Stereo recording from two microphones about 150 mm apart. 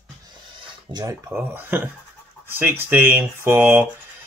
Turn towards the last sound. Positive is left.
turn(degrees=-15)  # may be behind; listen again after turning